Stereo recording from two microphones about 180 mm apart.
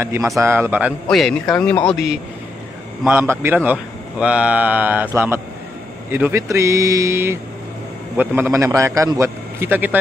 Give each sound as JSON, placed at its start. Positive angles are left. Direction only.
{"t": 0.0, "sound": "a man's voice", "side_deg": -15}
{"t": 1.0, "sound": "a man's voice", "side_deg": 0}